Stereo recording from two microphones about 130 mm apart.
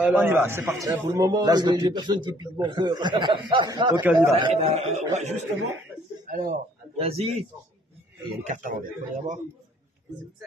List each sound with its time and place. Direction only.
0.0 s a man's voice: 10° right (ahead or behind); by 3.7 s 40° right (ahead or behind)
4.0 s a man's voice: 15° right (ahead or behind)
4.4 s a man's voice: 50° right (ahead or behind)
6.2 s a sound: 90° right
7.0 s speech: 50° right (ahead or behind)
8.5 s a man's voice: 75° right (ahead or behind)